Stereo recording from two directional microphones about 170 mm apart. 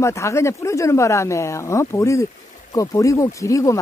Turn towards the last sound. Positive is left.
turn(degrees=20)  # may be behind; listen again after turning